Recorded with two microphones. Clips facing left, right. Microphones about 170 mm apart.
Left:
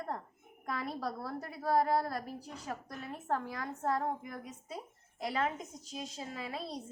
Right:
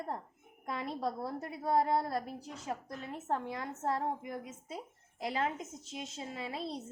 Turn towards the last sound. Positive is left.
turn(degrees=-25)  # may be behind; listen again after turning